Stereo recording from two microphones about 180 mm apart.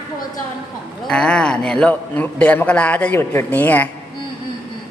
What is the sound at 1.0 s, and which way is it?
A man's voice, 5° left (ahead or behind).